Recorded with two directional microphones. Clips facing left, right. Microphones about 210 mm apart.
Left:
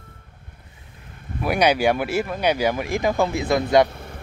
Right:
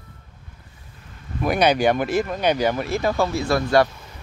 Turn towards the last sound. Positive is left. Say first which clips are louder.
# left 6 dB
turn(degrees=55)  # may be behind; listen again after turning